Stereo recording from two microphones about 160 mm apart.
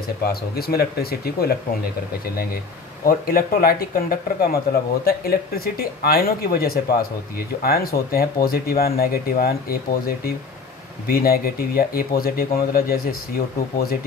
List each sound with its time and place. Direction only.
0.2 s speech: 75° left (ahead or behind)
3.1 s speech: 65° left (ahead or behind)